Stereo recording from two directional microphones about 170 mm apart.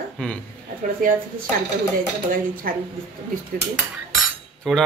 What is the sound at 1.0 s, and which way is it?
Speech, 55° right (ahead or behind).